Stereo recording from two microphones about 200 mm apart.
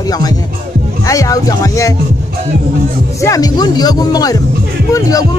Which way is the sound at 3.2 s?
15° left (ahead or behind).